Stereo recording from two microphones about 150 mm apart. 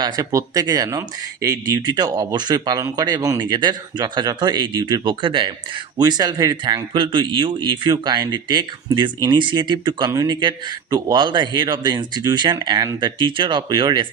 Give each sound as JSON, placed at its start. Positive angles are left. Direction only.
{"t": 0.0, "sound": "speech", "side_deg": -20}